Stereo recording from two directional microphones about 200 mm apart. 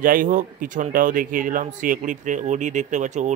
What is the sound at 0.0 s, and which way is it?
Speech, 45° right (ahead or behind).